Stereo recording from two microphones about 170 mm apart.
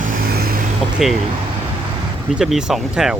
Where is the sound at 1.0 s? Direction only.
Centre (ahead or behind).